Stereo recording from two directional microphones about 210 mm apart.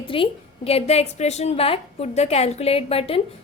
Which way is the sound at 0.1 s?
25° left (ahead or behind).